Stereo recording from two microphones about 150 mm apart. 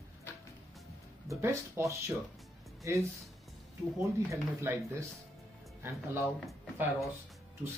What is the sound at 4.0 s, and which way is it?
Speech, 20° right (ahead or behind).